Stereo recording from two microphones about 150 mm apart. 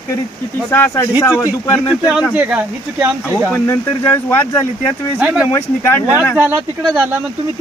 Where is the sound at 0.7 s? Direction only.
15° left (ahead or behind).